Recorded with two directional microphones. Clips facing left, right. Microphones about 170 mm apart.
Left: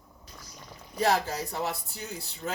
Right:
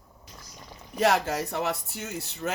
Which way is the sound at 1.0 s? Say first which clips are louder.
Right 3 dB; 75° right (ahead or behind).